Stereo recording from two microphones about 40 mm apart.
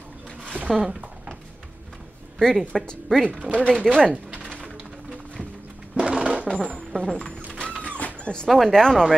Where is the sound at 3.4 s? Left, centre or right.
Left.